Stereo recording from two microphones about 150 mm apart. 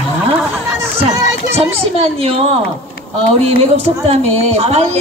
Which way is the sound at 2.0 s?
40° right (ahead or behind).